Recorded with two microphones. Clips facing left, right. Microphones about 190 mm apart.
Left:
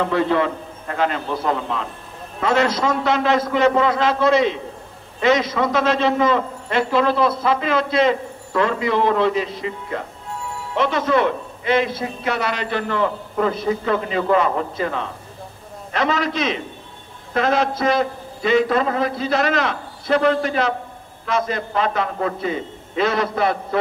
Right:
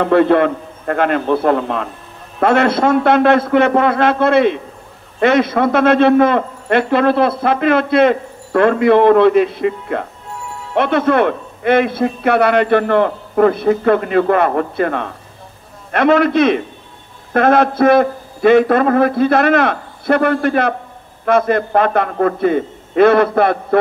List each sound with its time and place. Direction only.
0.0 s a man's voice: 55° right (ahead or behind)